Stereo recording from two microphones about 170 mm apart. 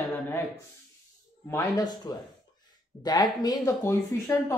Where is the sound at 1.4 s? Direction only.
20° left (ahead or behind).